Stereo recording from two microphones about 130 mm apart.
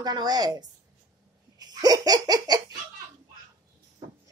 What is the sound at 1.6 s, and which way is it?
Laughter, 30° right (ahead or behind).